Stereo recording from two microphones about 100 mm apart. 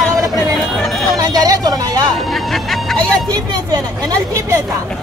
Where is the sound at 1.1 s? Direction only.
40° right (ahead or behind).